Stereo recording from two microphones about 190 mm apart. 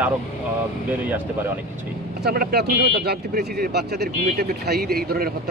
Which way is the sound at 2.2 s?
55° right (ahead or behind).